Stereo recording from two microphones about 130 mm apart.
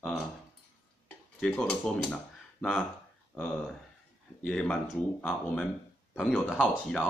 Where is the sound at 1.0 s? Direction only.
10° left (ahead or behind).